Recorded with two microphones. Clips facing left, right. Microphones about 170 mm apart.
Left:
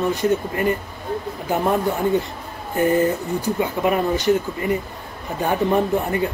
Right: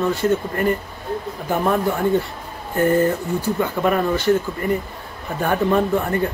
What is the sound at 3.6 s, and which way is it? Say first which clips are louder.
A man's voice: even; 15° left (ahead or behind).